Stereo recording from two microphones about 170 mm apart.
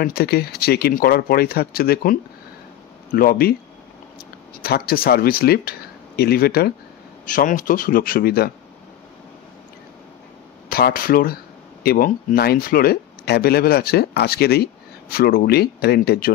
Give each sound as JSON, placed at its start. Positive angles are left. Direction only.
{"t": 0.0, "sound": "speech", "side_deg": 65}
{"t": 3.2, "sound": "speech", "side_deg": 60}
{"t": 4.6, "sound": "speech", "side_deg": 60}
{"t": 7.2, "sound": "speech", "side_deg": 50}
{"t": 10.7, "sound": "speech", "side_deg": 60}